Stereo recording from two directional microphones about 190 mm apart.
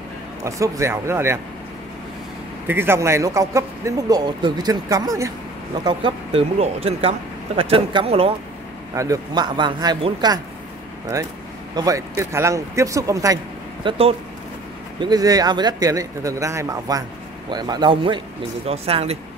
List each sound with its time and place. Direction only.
0.4 s speech: 15° right (ahead or behind)
2.7 s speech: 10° right (ahead or behind)
5.9 s speech: 30° right (ahead or behind)
8.9 s speech: 15° right (ahead or behind)
11.7 s speech: 20° right (ahead or behind)
13.8 s speech: 30° right (ahead or behind)